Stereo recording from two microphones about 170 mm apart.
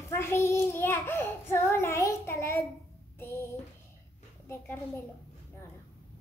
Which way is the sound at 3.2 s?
15° left (ahead or behind).